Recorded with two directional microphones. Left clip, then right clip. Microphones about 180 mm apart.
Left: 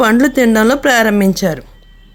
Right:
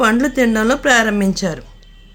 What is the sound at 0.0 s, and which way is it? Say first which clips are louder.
A woman's voice: left 4 dB; 40° left (ahead or behind).